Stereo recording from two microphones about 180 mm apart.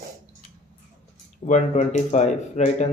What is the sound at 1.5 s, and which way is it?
Speech, 40° left (ahead or behind).